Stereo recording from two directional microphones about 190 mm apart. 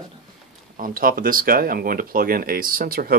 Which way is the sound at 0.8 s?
50° right (ahead or behind).